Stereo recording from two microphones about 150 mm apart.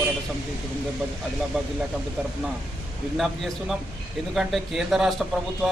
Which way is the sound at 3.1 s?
Centre (ahead or behind).